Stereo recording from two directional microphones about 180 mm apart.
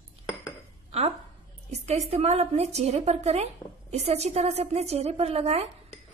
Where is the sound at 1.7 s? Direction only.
35° right (ahead or behind).